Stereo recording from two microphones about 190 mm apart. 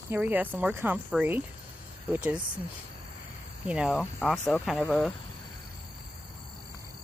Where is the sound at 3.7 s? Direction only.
5° right (ahead or behind).